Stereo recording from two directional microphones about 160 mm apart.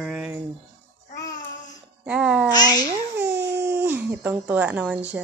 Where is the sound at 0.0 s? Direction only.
5° right (ahead or behind).